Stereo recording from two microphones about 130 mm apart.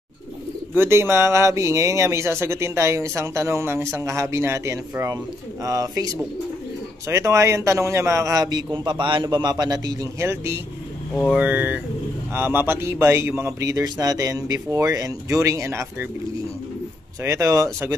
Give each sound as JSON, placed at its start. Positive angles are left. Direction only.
{"t": 0.7, "sound": "speech", "side_deg": -20}
{"t": 17.2, "sound": "speech", "side_deg": -20}